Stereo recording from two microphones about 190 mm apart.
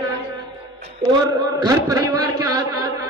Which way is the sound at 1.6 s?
20° right (ahead or behind).